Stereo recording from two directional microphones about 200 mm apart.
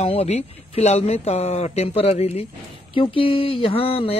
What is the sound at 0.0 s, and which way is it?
Speech, 30° left (ahead or behind).